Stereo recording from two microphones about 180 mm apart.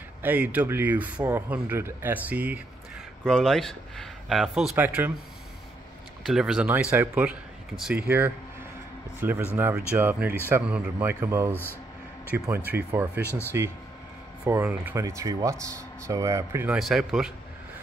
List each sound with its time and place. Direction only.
0.2 s speech: 10° right (ahead or behind)
6.2 s speech: 5° right (ahead or behind)
16.7 s speech: centre (ahead or behind)